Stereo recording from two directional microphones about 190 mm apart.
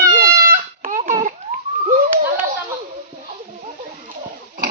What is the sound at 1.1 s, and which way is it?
Babbling, 40° right (ahead or behind).